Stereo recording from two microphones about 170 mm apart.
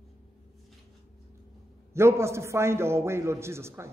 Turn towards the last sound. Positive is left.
turn(degrees=-15)  # may be behind; listen again after turning